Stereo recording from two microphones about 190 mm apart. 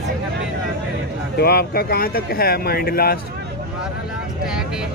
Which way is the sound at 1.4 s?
55° left (ahead or behind).